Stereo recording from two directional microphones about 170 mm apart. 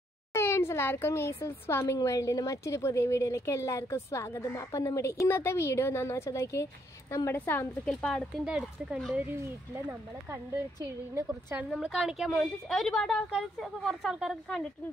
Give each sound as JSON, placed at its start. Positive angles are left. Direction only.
{"t": 0.3, "sound": "a woman's voice", "side_deg": 15}